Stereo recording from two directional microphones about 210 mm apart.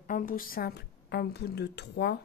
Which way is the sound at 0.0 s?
40° left (ahead or behind).